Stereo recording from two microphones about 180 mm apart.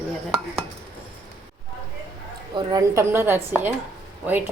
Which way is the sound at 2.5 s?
20° right (ahead or behind).